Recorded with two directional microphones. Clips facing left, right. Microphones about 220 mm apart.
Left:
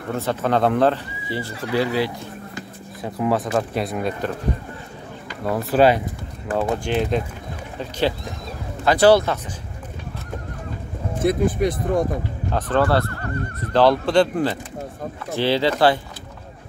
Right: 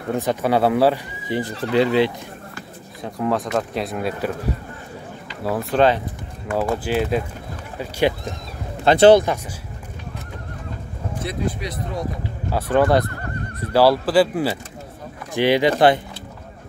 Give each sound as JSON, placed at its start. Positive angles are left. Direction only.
{"t": 0.1, "sound": "speech", "side_deg": -15}
{"t": 3.0, "sound": "speech", "side_deg": 0}
{"t": 5.4, "sound": "speech", "side_deg": 0}
{"t": 8.8, "sound": "speech", "side_deg": -25}
{"t": 11.2, "sound": "speech", "side_deg": 50}
{"t": 12.4, "sound": "speech", "side_deg": -10}